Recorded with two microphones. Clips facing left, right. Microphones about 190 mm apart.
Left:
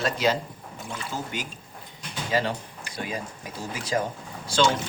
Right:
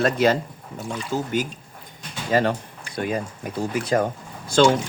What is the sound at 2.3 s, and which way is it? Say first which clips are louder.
A man's voice: right 6 dB; 55° right (ahead or behind).